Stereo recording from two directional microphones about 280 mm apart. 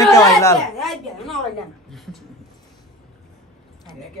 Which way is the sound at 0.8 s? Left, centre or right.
Centre.